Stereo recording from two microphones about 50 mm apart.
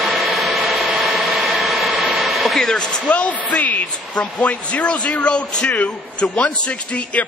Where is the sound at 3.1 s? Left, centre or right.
Left.